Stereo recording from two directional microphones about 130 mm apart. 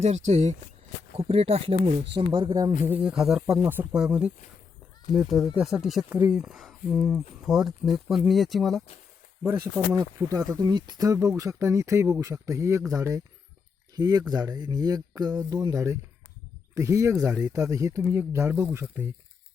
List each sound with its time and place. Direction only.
0.0 s speech: 60° right (ahead or behind)
1.1 s speech: 50° right (ahead or behind)
2.5 s speech: 30° right (ahead or behind)
2.8 s speech: 10° right (ahead or behind)
3.7 s speech: 15° right (ahead or behind)
6.1 s speech: 15° right (ahead or behind)
6.3 s speech: centre (ahead or behind)
9.4 s speech: 15° right (ahead or behind)